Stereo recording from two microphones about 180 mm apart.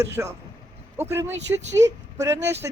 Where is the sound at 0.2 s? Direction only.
10° right (ahead or behind).